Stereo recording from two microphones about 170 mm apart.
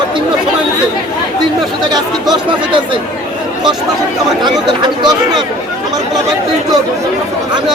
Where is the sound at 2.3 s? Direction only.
30° right (ahead or behind).